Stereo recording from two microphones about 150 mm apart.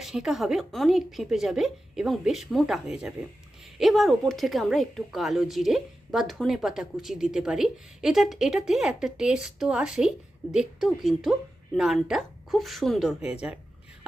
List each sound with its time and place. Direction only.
0.0 s a woman's voice: 5° right (ahead or behind)